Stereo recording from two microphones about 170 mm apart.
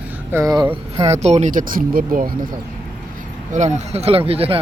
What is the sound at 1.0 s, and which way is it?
Speech, 40° right (ahead or behind).